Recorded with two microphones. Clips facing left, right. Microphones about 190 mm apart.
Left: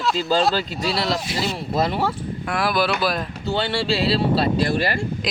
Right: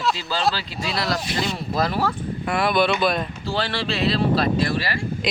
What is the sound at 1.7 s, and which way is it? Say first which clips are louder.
Speech: left 2 dB; 25° left (ahead or behind).